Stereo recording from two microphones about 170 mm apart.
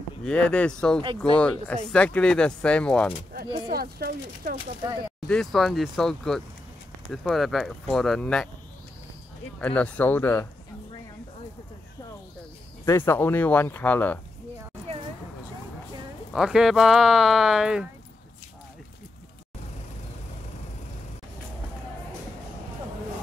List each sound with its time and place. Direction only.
0.2 s speech: 5° left (ahead or behind)
3.6 s speech: 60° right (ahead or behind)
5.3 s speech: centre (ahead or behind)
9.6 s speech: 10° left (ahead or behind)
12.8 s speech: 15° left (ahead or behind)
16.3 s speech: 5° right (ahead or behind)